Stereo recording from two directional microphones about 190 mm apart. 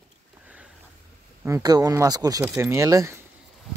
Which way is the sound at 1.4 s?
20° right (ahead or behind).